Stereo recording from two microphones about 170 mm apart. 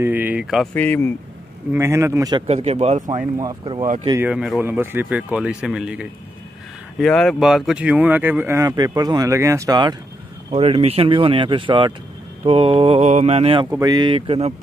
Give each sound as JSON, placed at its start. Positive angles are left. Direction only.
{"t": 0.0, "sound": "speech", "side_deg": -10}
{"t": 0.7, "sound": "speech", "side_deg": 10}
{"t": 1.7, "sound": "speech", "side_deg": -15}
{"t": 2.4, "sound": "speech", "side_deg": -40}
{"t": 3.2, "sound": "speech", "side_deg": -20}
{"t": 4.2, "sound": "speech", "side_deg": -5}
{"t": 10.5, "sound": "speech", "side_deg": -40}
{"t": 13.7, "sound": "speech", "side_deg": -20}